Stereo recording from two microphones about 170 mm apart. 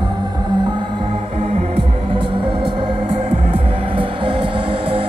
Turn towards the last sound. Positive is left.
turn(degrees=-30)  # may be behind; listen again after turning